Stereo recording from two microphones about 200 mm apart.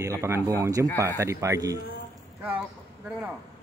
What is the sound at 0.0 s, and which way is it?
A man's voice, 15° right (ahead or behind).